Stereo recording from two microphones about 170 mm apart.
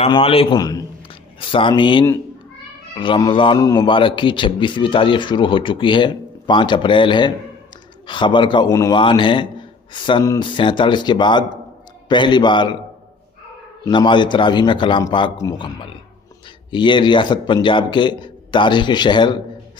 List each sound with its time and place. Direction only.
0.0 s a man's voice: 35° left (ahead or behind)
0.6 s a man's voice: 20° left (ahead or behind)
13.8 s a man's voice: 25° left (ahead or behind)